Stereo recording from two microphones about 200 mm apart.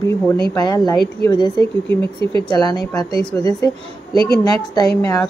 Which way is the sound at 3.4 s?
20° left (ahead or behind).